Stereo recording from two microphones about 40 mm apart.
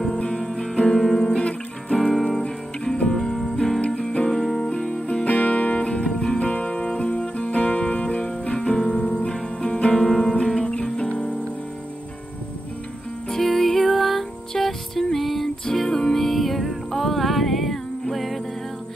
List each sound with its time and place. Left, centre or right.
0.3 s music: centre
1.2 s music: left
2.0 s music: centre
2.4 s music: left
5.2 s music: left; by 10.3 s centre
10.4 s guitar: centre
10.7 s guitar: left
13.3 s music: centre